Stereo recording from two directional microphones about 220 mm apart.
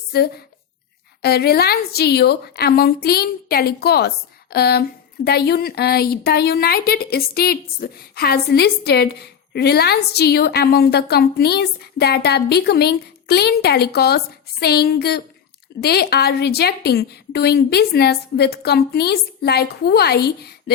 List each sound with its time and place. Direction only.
0.1 s a woman's voice: 45° left (ahead or behind)